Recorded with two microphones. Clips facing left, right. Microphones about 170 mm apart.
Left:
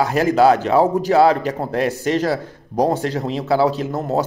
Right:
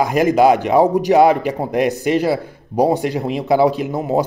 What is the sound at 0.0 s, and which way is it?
A man's voice, 15° right (ahead or behind).